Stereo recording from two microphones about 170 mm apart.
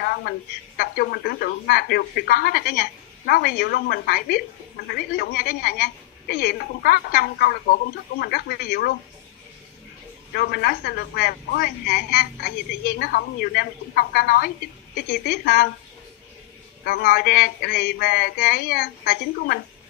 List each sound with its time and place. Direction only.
0.7 s a woman's voice: 70° left (ahead or behind)
10.3 s a woman's voice: 65° left (ahead or behind)
16.8 s a woman's voice: 65° left (ahead or behind)